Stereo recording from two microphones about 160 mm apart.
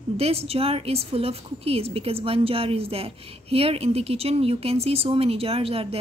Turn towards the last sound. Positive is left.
turn(degrees=-35)  # may be behind; listen again after turning